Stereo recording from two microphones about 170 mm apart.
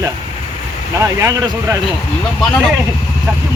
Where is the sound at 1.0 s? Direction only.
20° right (ahead or behind).